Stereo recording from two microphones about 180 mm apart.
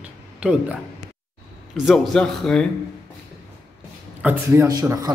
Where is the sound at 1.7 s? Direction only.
Centre (ahead or behind).